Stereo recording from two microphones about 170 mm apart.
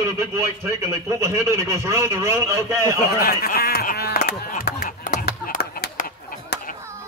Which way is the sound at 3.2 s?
60° left (ahead or behind).